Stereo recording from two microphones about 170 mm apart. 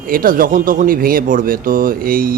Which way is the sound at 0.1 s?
55° right (ahead or behind).